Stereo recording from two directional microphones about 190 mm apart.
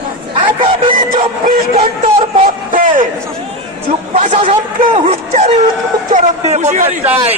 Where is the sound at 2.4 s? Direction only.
45° right (ahead or behind).